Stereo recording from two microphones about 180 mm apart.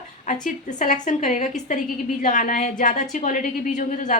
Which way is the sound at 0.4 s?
45° left (ahead or behind).